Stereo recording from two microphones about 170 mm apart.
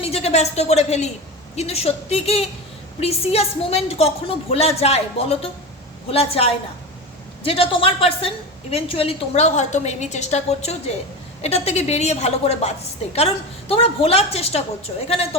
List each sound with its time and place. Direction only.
0.0 s a woman's voice: 35° left (ahead or behind)